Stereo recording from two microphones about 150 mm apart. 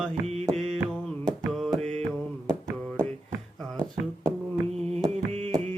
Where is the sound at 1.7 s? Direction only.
45° right (ahead or behind).